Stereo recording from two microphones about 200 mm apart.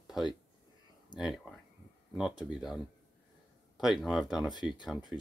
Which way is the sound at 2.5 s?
Centre (ahead or behind).